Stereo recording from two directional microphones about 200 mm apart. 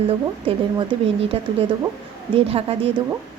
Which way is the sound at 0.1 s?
25° right (ahead or behind).